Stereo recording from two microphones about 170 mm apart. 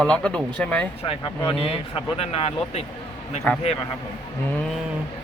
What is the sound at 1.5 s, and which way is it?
Speech, 35° left (ahead or behind).